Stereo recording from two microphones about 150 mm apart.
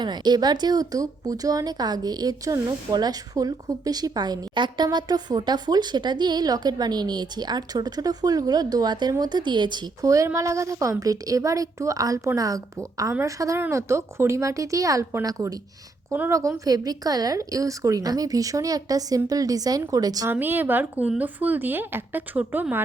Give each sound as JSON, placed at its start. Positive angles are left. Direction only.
{"t": 0.0, "sound": "speech", "side_deg": -30}
{"t": 20.3, "sound": "speech", "side_deg": -15}